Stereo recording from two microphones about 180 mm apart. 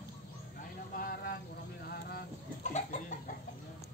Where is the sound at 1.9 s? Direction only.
60° left (ahead or behind).